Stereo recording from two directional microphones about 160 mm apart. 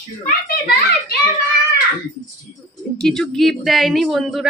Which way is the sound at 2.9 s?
5° left (ahead or behind).